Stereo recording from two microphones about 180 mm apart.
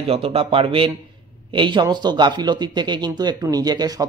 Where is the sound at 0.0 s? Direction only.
30° right (ahead or behind).